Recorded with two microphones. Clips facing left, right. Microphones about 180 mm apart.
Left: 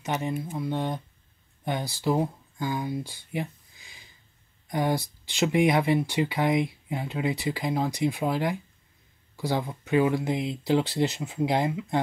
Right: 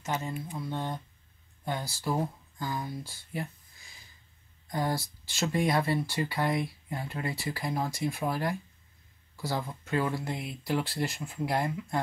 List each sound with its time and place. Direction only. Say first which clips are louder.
0.0 s speech: left 5 dB; 20° left (ahead or behind)